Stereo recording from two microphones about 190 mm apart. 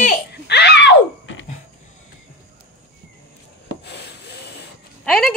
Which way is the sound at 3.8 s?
60° left (ahead or behind).